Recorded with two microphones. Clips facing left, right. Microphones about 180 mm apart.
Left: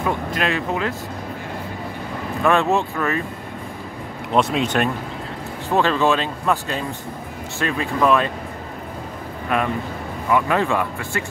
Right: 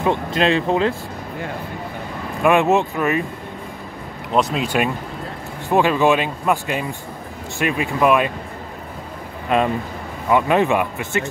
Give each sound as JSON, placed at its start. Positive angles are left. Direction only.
{"t": 0.0, "sound": "speech", "side_deg": -25}
{"t": 2.4, "sound": "speech", "side_deg": -15}
{"t": 4.3, "sound": "speech", "side_deg": 0}
{"t": 5.7, "sound": "speech", "side_deg": -15}
{"t": 9.5, "sound": "speech", "side_deg": -25}